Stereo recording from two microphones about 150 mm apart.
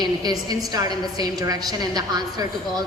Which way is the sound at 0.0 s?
25° right (ahead or behind).